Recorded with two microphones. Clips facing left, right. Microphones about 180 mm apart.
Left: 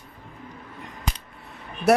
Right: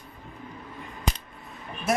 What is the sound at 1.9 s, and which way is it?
Speech, 70° left (ahead or behind).